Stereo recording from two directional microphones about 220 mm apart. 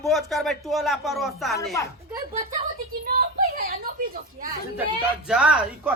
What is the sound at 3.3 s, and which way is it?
Speech, 40° right (ahead or behind).